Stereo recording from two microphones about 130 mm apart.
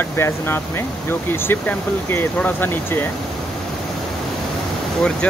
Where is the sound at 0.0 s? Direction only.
20° left (ahead or behind).